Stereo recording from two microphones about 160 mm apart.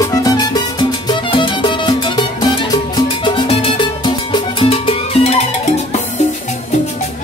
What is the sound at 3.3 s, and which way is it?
Music, 30° left (ahead or behind).